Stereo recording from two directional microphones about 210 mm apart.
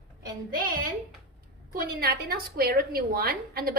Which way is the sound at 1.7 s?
45° right (ahead or behind).